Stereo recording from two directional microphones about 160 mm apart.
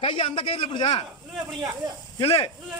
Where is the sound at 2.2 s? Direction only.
35° left (ahead or behind).